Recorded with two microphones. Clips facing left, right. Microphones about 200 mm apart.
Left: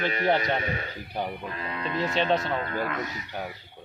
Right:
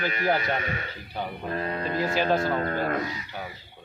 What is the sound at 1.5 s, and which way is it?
Mantra, 40° right (ahead or behind).